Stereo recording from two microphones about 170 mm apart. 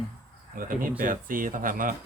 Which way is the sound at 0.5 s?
55° right (ahead or behind).